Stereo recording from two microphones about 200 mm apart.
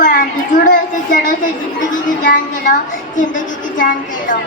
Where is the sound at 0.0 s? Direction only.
40° left (ahead or behind).